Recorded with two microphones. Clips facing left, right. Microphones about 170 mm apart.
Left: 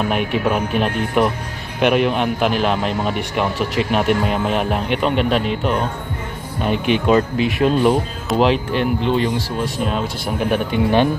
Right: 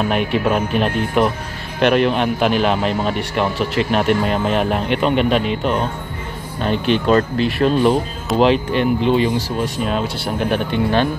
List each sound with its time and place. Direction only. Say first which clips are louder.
0.1 s speech: right 1 dB; 5° left (ahead or behind)
10.2 s speech: even; 10° left (ahead or behind)